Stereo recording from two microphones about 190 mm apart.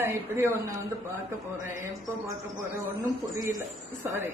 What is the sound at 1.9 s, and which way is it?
Speech, 15° right (ahead or behind).